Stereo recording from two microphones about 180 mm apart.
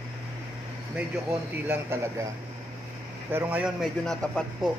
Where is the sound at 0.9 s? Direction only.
10° right (ahead or behind).